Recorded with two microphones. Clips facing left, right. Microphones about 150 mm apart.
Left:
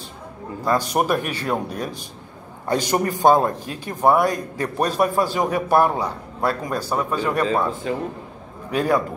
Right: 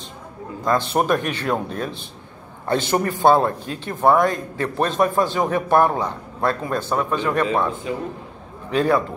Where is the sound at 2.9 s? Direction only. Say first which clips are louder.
Even; 15° left (ahead or behind).